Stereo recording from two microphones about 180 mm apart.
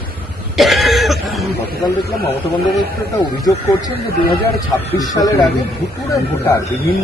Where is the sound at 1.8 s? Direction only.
20° left (ahead or behind).